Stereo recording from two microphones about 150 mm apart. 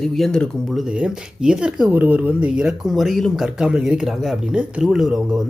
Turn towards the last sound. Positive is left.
turn(degrees=0)  # may be behind; listen again after turning